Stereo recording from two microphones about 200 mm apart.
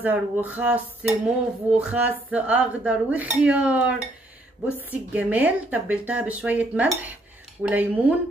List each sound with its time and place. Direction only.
0.0 s dishes: 10° right (ahead or behind)
5.1 s dishes: 5° right (ahead or behind)